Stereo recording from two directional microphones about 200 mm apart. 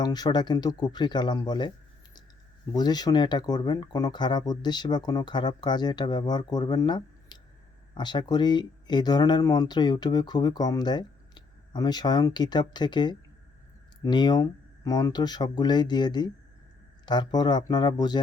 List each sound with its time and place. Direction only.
0.0 s speech: 20° left (ahead or behind)
2.7 s speech: 20° left (ahead or behind)